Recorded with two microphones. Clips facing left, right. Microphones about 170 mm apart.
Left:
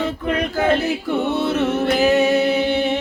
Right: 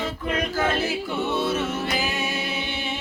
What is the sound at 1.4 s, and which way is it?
Music, 65° left (ahead or behind).